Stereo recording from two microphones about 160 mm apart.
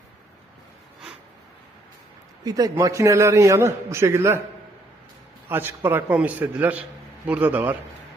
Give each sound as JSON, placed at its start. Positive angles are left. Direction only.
{"t": 2.4, "sound": "a man's voice", "side_deg": -25}
{"t": 5.5, "sound": "a man's voice", "side_deg": -15}